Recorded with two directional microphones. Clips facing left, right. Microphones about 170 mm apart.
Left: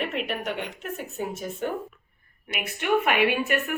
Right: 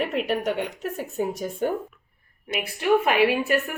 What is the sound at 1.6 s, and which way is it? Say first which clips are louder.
A woman's voice: right 5 dB; 40° right (ahead or behind).